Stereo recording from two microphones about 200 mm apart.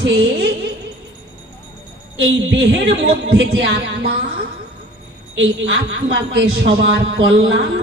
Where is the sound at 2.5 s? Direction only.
60° right (ahead or behind).